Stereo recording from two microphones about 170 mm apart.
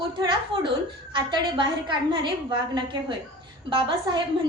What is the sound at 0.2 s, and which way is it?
A woman's voice, 30° right (ahead or behind).